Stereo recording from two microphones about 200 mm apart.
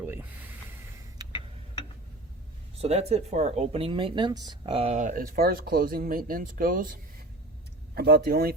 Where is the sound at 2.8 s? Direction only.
30° right (ahead or behind).